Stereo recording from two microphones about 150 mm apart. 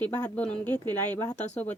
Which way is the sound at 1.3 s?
50° left (ahead or behind).